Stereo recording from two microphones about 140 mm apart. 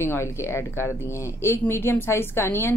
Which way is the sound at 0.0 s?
20° left (ahead or behind).